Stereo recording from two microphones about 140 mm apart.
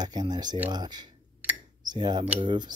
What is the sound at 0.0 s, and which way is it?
Speech, 30° right (ahead or behind).